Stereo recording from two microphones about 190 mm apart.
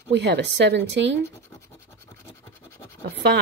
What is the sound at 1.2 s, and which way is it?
Scratch, 15° left (ahead or behind).